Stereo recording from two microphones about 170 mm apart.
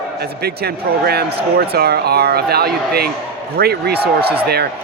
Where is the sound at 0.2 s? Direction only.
65° right (ahead or behind).